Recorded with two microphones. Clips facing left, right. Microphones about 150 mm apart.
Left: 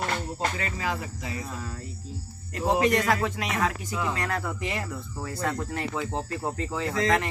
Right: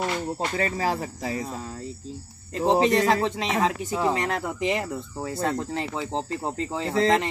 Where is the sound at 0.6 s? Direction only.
35° right (ahead or behind).